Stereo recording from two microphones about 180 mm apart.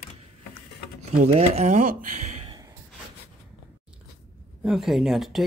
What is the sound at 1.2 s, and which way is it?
Speech, 40° right (ahead or behind).